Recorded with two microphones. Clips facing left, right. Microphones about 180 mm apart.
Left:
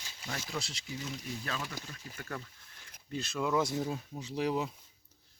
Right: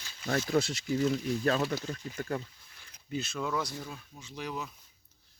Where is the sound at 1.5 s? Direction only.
40° right (ahead or behind).